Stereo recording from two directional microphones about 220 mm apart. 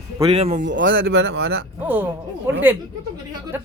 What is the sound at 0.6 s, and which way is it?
Speech, 55° right (ahead or behind).